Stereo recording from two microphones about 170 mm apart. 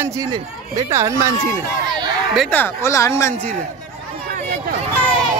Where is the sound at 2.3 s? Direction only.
5° left (ahead or behind).